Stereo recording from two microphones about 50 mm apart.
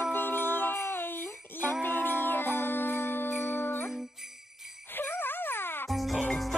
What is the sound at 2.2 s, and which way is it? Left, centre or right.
Jingle bell, left.